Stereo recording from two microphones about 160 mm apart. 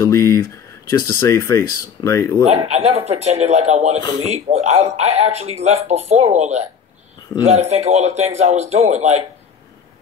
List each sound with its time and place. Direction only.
0.0 s speech: 20° left (ahead or behind)
2.4 s speech: 40° right (ahead or behind)